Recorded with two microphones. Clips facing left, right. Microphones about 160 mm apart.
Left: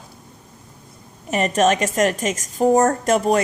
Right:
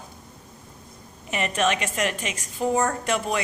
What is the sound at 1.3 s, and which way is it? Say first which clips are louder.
A woman's voice: left 7 dB; 40° left (ahead or behind).